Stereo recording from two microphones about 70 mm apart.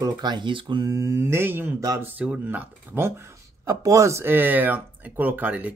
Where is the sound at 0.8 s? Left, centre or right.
Right.